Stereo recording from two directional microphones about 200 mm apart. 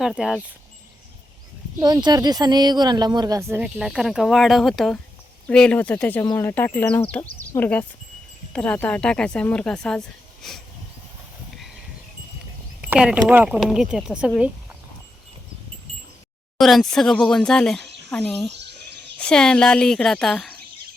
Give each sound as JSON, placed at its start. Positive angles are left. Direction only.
{"t": 0.0, "sound": "speech", "side_deg": -5}
{"t": 1.8, "sound": "speech", "side_deg": -20}
{"t": 12.8, "sound": "speech", "side_deg": -5}
{"t": 16.6, "sound": "speech", "side_deg": 0}